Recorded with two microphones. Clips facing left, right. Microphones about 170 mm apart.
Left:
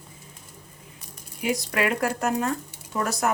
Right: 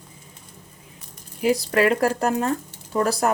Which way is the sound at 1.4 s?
35° right (ahead or behind).